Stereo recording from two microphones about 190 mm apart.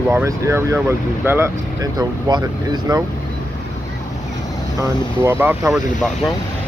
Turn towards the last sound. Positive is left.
turn(degrees=-10)  # may be behind; listen again after turning